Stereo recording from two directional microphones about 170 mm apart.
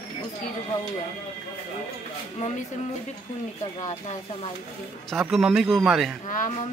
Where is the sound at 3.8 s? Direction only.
40° left (ahead or behind).